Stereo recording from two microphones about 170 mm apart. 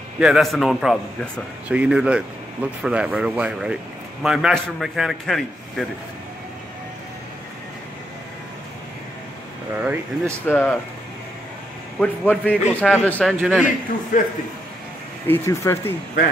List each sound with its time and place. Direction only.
0.2 s speech: centre (ahead or behind)
9.8 s speech: 10° right (ahead or behind)
10.4 s speech: 10° left (ahead or behind)
12.0 s speech: 5° left (ahead or behind)
14.1 s a man's voice: 50° left (ahead or behind)
15.2 s speech: 15° left (ahead or behind)